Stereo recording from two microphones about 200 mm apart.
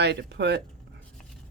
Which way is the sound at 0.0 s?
55° right (ahead or behind).